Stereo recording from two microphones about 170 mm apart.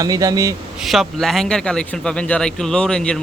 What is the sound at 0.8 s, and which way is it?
Speech, centre (ahead or behind).